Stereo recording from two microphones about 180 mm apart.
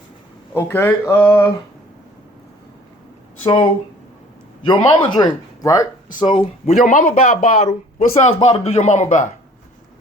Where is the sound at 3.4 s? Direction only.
30° left (ahead or behind).